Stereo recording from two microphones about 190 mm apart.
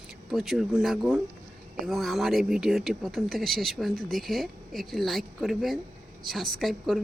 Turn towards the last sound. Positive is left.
turn(degrees=0)  # may be behind; listen again after turning